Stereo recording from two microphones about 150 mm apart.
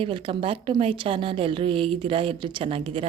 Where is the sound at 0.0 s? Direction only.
35° right (ahead or behind).